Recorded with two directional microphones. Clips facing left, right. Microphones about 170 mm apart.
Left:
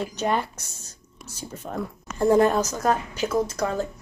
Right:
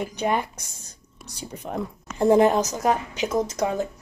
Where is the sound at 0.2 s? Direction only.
15° right (ahead or behind).